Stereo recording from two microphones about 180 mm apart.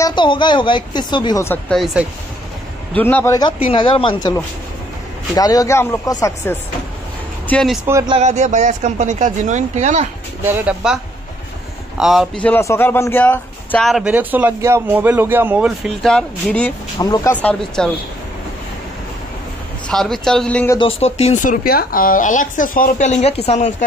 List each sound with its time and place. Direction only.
0.0 s speech: 25° left (ahead or behind)
1.7 s speech: centre (ahead or behind)
3.7 s speech: 30° left (ahead or behind)
7.4 s speech: 5° left (ahead or behind)
8.1 s speech: 40° right (ahead or behind)
10.4 s speech: 10° right (ahead or behind)
12.0 s speech: centre (ahead or behind)
17.0 s speech: 20° left (ahead or behind)
19.9 s speech: centre (ahead or behind)
20.7 s speech: 30° left (ahead or behind)
21.5 s speech: 55° left (ahead or behind); by 23.7 s 35° left (ahead or behind)